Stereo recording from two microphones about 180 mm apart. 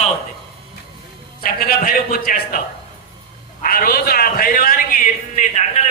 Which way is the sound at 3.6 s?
55° left (ahead or behind).